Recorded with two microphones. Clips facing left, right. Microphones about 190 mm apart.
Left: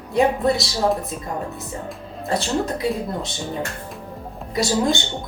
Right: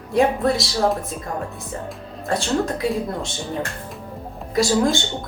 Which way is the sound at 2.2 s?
Centre (ahead or behind).